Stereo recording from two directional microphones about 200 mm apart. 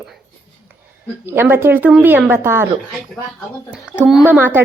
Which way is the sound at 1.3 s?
10° right (ahead or behind).